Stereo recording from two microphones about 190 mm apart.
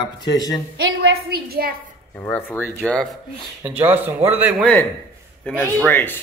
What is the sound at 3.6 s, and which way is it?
Speech, 10° right (ahead or behind).